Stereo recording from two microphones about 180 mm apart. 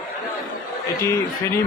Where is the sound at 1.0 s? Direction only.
15° left (ahead or behind).